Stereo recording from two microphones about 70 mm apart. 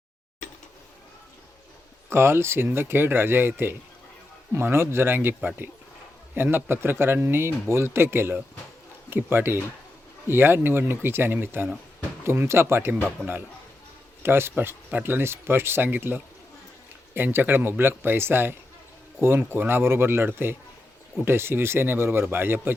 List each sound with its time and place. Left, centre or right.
2.0 s speech: right
6.3 s speech: right
13.2 s a man's voice: centre
14.2 s speech: right